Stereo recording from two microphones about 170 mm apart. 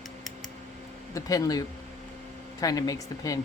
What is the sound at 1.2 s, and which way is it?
Speech, 20° left (ahead or behind).